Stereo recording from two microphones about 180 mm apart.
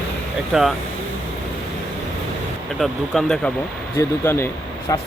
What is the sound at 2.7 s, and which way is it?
Speech, centre (ahead or behind).